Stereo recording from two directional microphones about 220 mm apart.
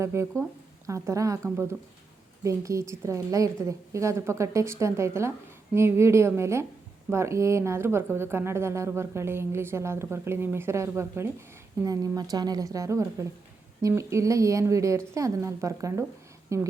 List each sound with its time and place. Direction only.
0.0 s a woman's voice: 10° right (ahead or behind)